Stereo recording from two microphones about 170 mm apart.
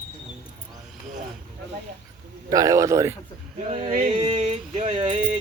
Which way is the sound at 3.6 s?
40° right (ahead or behind).